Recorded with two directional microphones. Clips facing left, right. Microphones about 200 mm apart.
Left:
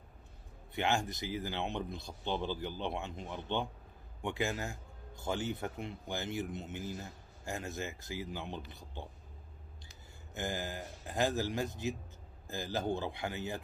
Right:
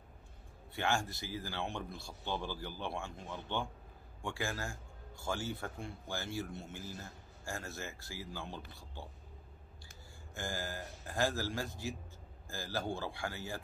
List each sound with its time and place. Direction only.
0.7 s speech: 20° left (ahead or behind)
10.3 s speech: 20° left (ahead or behind)